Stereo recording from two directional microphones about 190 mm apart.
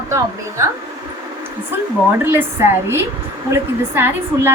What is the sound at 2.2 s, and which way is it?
A woman's voice, 10° right (ahead or behind).